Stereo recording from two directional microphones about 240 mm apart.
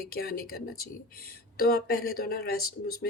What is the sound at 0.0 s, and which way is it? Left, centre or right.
Speech, left.